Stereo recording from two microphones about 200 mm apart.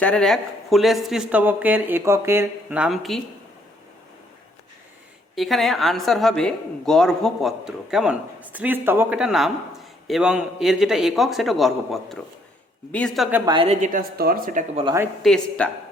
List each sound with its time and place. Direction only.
0.0 s speech: 5° left (ahead or behind)
5.3 s speech: centre (ahead or behind)
13.4 s a woman's voice: 25° right (ahead or behind)
13.8 s speech: 45° right (ahead or behind)
15.2 s speech: 5° left (ahead or behind)